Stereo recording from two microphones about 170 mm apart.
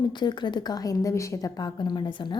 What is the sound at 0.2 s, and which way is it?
A woman's voice, 25° left (ahead or behind).